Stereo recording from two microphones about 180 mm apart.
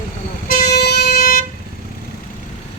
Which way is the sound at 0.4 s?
55° left (ahead or behind).